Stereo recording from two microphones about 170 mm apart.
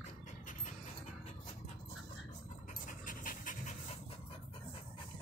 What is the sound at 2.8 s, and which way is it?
Pant, 50° left (ahead or behind).